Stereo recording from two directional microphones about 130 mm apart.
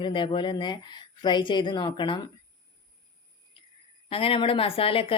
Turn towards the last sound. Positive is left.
turn(degrees=45)  # may be behind; listen again after turning